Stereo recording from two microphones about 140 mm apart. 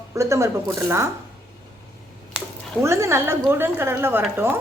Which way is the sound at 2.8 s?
20° right (ahead or behind).